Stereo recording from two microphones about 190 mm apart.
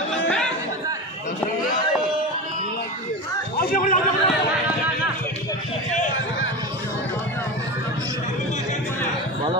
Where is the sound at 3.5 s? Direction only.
50° left (ahead or behind).